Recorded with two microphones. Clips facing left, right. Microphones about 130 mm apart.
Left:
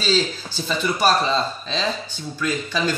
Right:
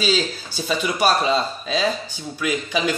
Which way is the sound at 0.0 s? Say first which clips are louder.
Even; 10° right (ahead or behind).